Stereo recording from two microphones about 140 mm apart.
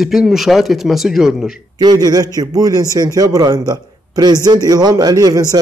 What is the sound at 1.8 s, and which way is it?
A man's voice, 30° right (ahead or behind).